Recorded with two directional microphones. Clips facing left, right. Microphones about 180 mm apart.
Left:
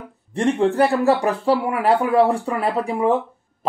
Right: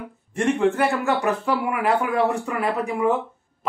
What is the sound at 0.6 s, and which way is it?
Speech, 35° left (ahead or behind).